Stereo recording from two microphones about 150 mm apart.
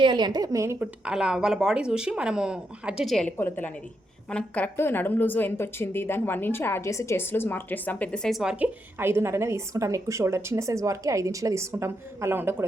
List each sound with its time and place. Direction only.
0.0 s a woman's voice: 30° right (ahead or behind); by 3.3 s 5° left (ahead or behind)
3.3 s a woman's voice: 15° left (ahead or behind); by 12.6 s 15° right (ahead or behind)